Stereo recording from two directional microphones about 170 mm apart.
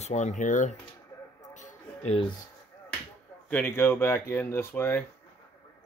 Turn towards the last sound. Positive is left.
turn(degrees=15)  # may be behind; listen again after turning